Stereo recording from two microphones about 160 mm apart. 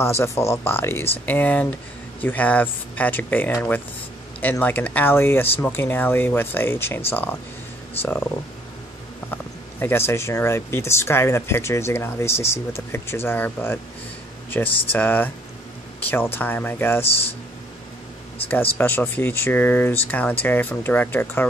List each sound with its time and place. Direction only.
0.0 s speech: 15° left (ahead or behind)
9.3 s speech: 15° left (ahead or behind)
18.8 s speech: 15° left (ahead or behind)